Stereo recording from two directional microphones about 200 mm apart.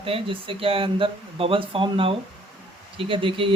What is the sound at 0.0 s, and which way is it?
Speech, 25° right (ahead or behind).